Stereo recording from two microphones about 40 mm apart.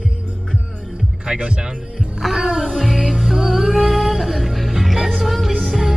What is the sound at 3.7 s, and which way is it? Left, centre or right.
Music, centre.